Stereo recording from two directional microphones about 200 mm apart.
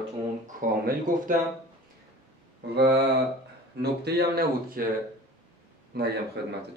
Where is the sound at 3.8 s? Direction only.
50° right (ahead or behind).